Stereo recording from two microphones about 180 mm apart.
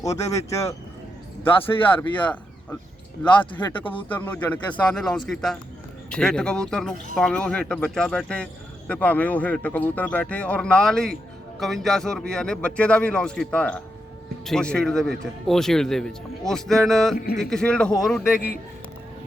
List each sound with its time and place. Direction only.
0.0 s a man's voice: 20° left (ahead or behind)
1.9 s a man's voice: 10° left (ahead or behind)